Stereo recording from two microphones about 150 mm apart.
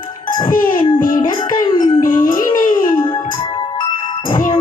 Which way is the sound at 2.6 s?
60° left (ahead or behind).